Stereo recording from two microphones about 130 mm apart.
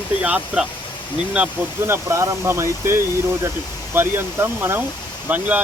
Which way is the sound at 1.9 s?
20° right (ahead or behind).